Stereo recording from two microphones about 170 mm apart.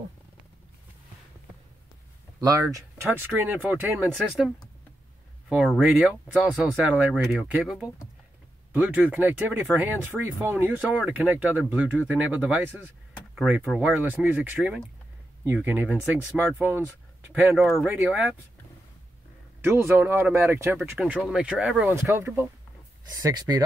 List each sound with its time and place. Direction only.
2.4 s speech: 15° right (ahead or behind)
5.5 s speech: 5° right (ahead or behind)
17.6 s speech: centre (ahead or behind)
19.6 s speech: 15° right (ahead or behind)
21.9 s speech: 15° right (ahead or behind)